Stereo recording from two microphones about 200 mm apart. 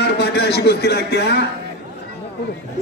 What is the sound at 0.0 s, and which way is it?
A man's voice, 55° left (ahead or behind).